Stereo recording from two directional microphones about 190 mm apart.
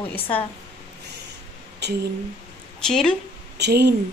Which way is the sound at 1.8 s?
60° right (ahead or behind).